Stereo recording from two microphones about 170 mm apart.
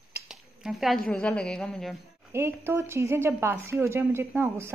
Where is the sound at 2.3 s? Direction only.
15° right (ahead or behind).